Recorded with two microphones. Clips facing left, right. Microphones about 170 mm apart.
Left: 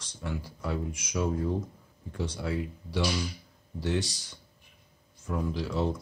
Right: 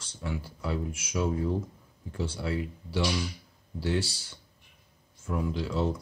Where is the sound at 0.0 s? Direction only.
5° right (ahead or behind).